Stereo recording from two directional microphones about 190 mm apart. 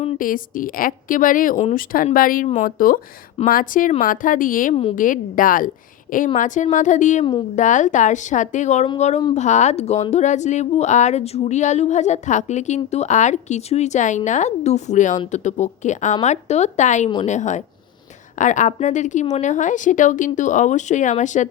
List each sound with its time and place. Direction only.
0.2 s speech: 45° left (ahead or behind)
4.7 s a woman's voice: 30° left (ahead or behind)
4.9 s speech: 45° left (ahead or behind)